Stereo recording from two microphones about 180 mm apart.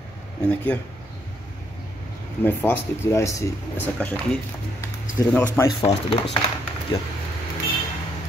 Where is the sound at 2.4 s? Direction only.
10° left (ahead or behind).